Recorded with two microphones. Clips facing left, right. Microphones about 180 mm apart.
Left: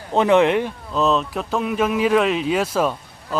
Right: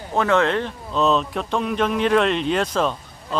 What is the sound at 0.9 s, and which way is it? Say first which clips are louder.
Speech: even; centre (ahead or behind).